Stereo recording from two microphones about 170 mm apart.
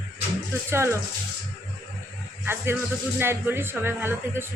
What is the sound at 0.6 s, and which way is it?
Speech, 15° right (ahead or behind).